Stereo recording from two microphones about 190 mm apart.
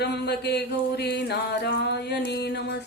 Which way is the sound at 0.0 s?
60° left (ahead or behind).